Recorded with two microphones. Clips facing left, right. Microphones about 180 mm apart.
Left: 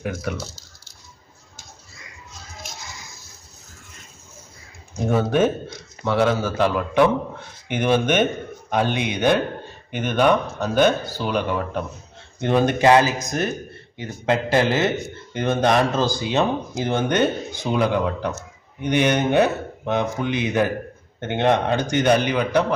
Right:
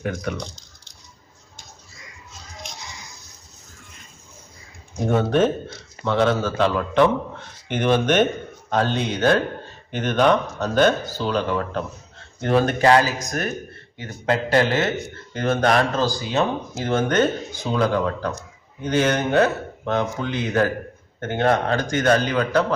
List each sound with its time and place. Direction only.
0.0 s speech: 5° left (ahead or behind)
2.6 s a sound: 5° left (ahead or behind)
5.0 s speech: 5° left (ahead or behind)